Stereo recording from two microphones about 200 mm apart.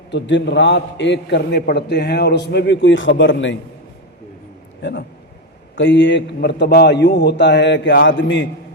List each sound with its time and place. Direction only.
0.1 s a man's voice: 60° left (ahead or behind)
4.8 s a man's voice: 60° left (ahead or behind)